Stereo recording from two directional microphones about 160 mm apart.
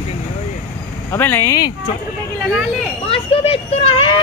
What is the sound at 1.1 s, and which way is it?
Speech, 15° left (ahead or behind).